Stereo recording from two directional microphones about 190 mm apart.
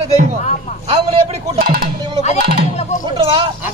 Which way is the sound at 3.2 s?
25° right (ahead or behind).